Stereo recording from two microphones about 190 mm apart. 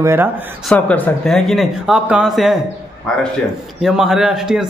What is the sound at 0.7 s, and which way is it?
A man's voice, 5° left (ahead or behind).